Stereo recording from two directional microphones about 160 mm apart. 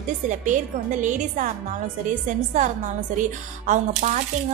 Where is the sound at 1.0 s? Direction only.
50° right (ahead or behind).